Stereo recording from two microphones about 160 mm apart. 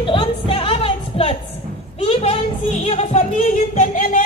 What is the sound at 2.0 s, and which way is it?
Music, 40° left (ahead or behind).